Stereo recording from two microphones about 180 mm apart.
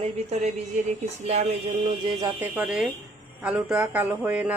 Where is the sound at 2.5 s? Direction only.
5° right (ahead or behind).